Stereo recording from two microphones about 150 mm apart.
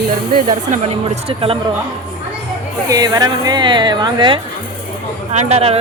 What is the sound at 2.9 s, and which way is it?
A woman's voice, 25° right (ahead or behind).